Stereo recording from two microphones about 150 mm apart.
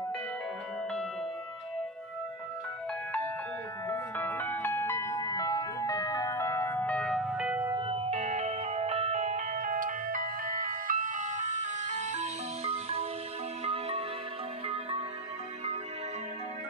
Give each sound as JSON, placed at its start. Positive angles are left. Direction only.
{"t": 3.9, "sound": "music", "side_deg": 10}
{"t": 7.7, "sound": "music", "side_deg": -35}